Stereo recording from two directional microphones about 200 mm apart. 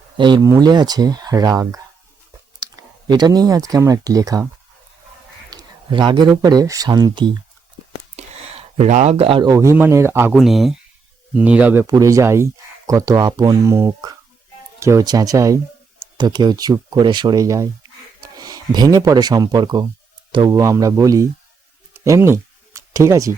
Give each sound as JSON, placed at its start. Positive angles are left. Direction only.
{"t": 0.2, "sound": "speech", "side_deg": -20}
{"t": 5.5, "sound": "a sound", "side_deg": -20}
{"t": 6.4, "sound": "speech", "side_deg": -20}
{"t": 8.1, "sound": "speech", "side_deg": -35}
{"t": 10.3, "sound": "speech", "side_deg": 0}
{"t": 22.0, "sound": "a sound", "side_deg": -15}